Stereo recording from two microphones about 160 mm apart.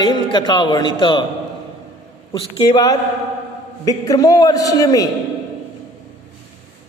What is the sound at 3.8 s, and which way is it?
A man's voice, 20° left (ahead or behind).